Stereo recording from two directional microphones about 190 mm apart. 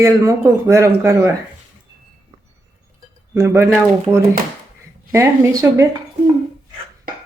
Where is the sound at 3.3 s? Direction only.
15° right (ahead or behind).